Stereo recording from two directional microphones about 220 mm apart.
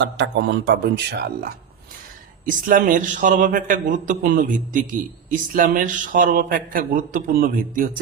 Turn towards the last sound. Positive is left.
turn(degrees=-40)  # may be behind; listen again after turning